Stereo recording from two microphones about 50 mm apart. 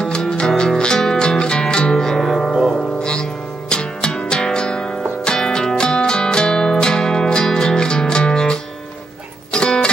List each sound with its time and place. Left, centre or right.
0.0 s music: centre
3.0 s music: centre